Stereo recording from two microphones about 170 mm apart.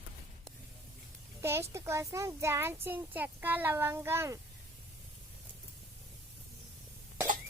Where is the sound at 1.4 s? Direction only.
15° right (ahead or behind).